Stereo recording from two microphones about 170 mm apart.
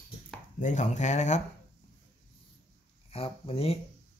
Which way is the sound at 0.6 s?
45° left (ahead or behind).